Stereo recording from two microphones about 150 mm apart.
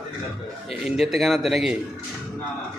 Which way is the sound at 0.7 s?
Centre (ahead or behind).